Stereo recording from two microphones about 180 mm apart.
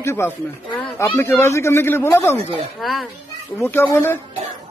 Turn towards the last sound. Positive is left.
turn(degrees=15)  # may be behind; listen again after turning